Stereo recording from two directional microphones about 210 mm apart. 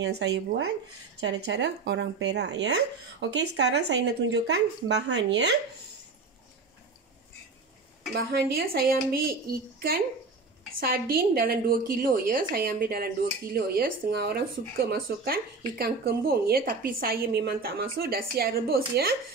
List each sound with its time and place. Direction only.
0.2 s a woman's voice: 55° right (ahead or behind)
8.1 s a woman's voice: 50° right (ahead or behind)